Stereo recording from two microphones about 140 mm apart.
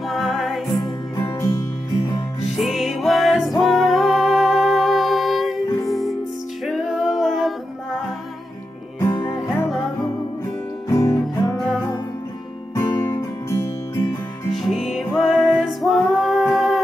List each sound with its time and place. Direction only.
0.1 s music: centre (ahead or behind)
0.7 s music: 25° left (ahead or behind)
2.6 s music: centre (ahead or behind)
9.0 s music: 25° left (ahead or behind)
10.9 s music: 20° left (ahead or behind)
12.7 s music: 20° left (ahead or behind)
14.5 s music: centre (ahead or behind)